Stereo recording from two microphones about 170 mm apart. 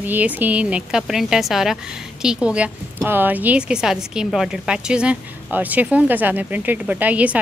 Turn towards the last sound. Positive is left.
turn(degrees=-10)  # may be behind; listen again after turning